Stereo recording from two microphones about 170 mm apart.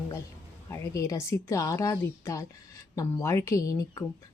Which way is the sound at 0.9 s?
20° left (ahead or behind).